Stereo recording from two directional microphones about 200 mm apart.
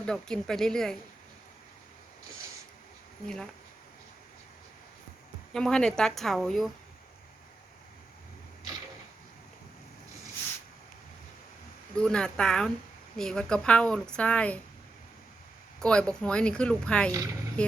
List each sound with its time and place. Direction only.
0.0 s a woman's voice: 5° left (ahead or behind)
3.2 s a woman's voice: 5° left (ahead or behind)
5.5 s a woman's voice: 5° left (ahead or behind)
11.9 s a woman's voice: 5° left (ahead or behind)
15.8 s a woman's voice: 5° left (ahead or behind)
17.1 s a woman's voice: 15° right (ahead or behind)
17.6 s a woman's voice: 5° left (ahead or behind)